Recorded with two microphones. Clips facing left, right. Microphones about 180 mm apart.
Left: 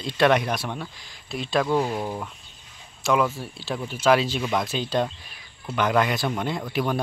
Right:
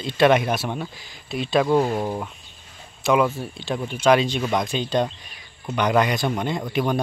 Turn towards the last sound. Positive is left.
turn(degrees=0)  # may be behind; listen again after turning